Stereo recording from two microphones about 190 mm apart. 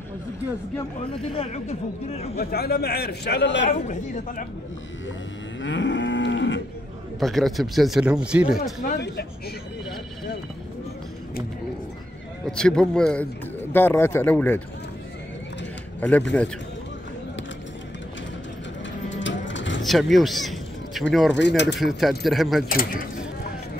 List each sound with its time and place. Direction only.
1.2 s speech: 30° left (ahead or behind)
2.3 s a man's voice: 55° left (ahead or behind)
3.6 s speech: 35° left (ahead or behind)
5.6 s moo: 75° left (ahead or behind)
7.2 s speech: centre (ahead or behind)
8.8 s a man's voice: 60° left (ahead or behind)
12.4 s speech: 5° left (ahead or behind)
16.0 s speech: 5° left (ahead or behind)
19.0 s sewing machine: 75° left (ahead or behind)
19.8 s a sound: centre (ahead or behind)
21.1 s speech: centre (ahead or behind)
21.4 s speech: 65° left (ahead or behind)
21.7 s speech: centre (ahead or behind)
22.7 s speech: 50° left (ahead or behind)